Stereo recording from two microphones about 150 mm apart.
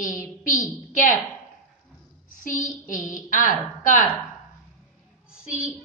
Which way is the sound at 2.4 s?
65° left (ahead or behind).